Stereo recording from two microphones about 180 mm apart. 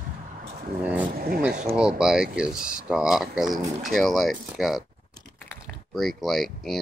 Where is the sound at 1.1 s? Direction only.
55° right (ahead or behind).